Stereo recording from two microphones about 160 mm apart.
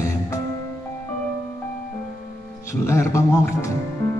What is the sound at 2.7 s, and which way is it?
Music, 20° left (ahead or behind).